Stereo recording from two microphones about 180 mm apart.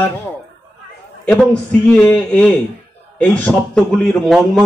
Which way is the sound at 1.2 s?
5° left (ahead or behind).